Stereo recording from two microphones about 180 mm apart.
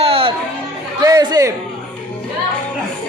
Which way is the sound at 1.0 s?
20° right (ahead or behind).